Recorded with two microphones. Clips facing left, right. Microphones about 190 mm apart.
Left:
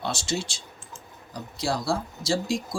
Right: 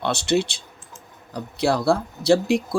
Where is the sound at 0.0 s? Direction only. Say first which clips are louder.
Right 8 dB; 60° right (ahead or behind).